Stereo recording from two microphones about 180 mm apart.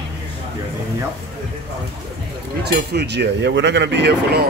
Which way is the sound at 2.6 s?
65° right (ahead or behind).